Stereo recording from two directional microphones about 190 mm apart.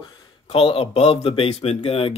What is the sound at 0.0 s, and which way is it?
Speech, 25° left (ahead or behind).